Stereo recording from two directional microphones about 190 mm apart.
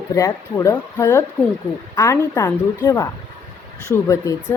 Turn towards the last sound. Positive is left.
turn(degrees=15)  # may be behind; listen again after turning